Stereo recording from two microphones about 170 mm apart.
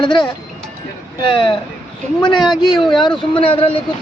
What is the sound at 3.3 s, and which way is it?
Speech, 30° left (ahead or behind).